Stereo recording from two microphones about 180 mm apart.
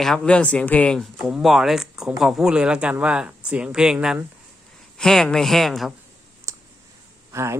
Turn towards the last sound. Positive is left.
turn(degrees=-15)  # may be behind; listen again after turning